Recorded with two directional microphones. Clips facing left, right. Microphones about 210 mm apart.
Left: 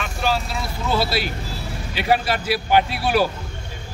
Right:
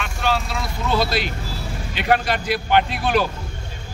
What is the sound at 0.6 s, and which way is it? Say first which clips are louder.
Speech: right 1 dB; 5° left (ahead or behind).